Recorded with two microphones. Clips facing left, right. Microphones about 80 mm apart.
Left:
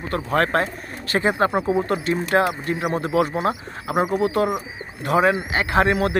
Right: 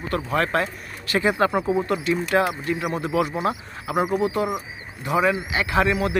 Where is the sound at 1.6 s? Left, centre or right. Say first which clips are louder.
Left 1 dB; centre.